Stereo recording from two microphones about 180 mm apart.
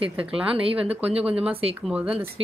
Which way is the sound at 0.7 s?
10° right (ahead or behind).